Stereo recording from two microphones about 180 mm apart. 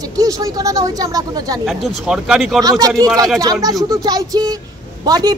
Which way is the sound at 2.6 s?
20° right (ahead or behind).